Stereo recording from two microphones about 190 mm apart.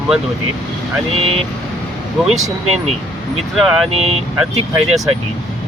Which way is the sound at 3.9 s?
30° right (ahead or behind).